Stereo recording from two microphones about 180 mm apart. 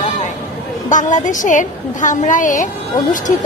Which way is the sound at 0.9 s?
45° left (ahead or behind).